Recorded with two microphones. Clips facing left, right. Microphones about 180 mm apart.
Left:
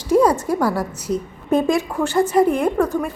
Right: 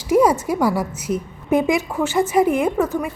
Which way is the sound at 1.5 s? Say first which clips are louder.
Even; 5° right (ahead or behind).